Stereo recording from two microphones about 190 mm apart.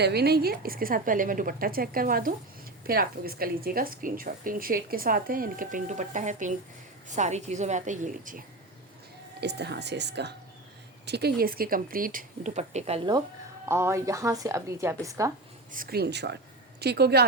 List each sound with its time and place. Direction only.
0.0 s a woman's voice: 60° right (ahead or behind)
9.4 s speech: 60° right (ahead or behind); by 13.1 s 35° right (ahead or behind)
13.7 s a woman's voice: 15° right (ahead or behind)
15.7 s speech: 50° right (ahead or behind)